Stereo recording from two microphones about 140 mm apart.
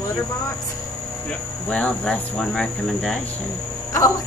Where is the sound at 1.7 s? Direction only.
10° left (ahead or behind).